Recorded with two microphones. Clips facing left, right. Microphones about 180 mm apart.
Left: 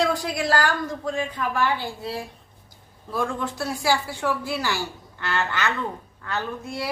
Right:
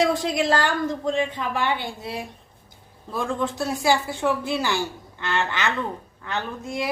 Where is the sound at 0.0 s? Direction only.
20° right (ahead or behind).